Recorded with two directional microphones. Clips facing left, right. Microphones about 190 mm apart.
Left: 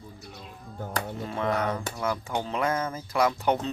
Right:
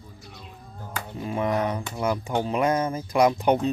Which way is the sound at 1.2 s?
15° right (ahead or behind).